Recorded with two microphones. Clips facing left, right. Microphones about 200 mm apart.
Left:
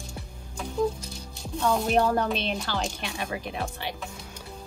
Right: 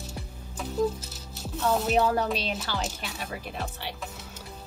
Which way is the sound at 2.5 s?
5° right (ahead or behind).